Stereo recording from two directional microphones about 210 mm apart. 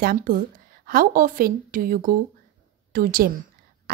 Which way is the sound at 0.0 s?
45° right (ahead or behind).